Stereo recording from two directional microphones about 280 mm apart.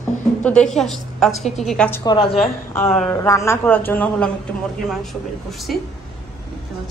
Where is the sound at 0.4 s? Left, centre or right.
Centre.